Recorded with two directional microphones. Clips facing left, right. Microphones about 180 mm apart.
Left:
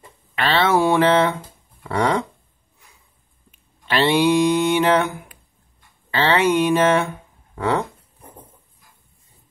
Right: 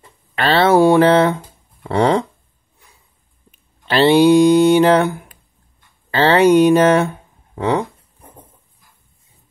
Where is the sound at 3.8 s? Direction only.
35° right (ahead or behind).